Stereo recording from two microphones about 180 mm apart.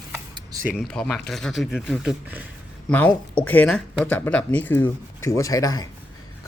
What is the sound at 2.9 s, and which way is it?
Speech, 10° left (ahead or behind).